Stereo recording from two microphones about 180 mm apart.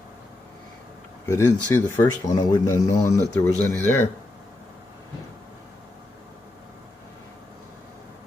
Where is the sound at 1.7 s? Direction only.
15° left (ahead or behind).